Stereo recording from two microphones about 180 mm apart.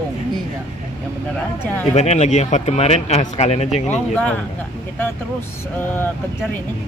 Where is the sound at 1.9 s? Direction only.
40° left (ahead or behind).